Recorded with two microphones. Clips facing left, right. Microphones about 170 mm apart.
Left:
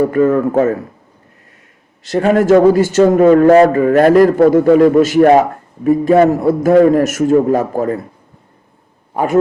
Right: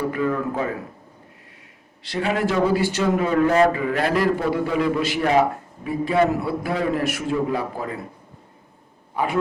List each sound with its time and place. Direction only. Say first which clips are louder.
0.0 s a man's voice: left 11 dB; 45° left (ahead or behind)
2.0 s a man's voice: left 12 dB; 45° left (ahead or behind)
9.1 s a man's voice: left 9 dB; 45° left (ahead or behind)